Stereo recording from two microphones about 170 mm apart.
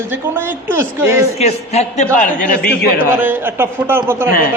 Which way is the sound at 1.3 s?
40° left (ahead or behind).